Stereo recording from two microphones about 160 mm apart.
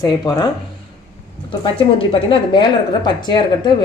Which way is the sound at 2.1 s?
35° left (ahead or behind).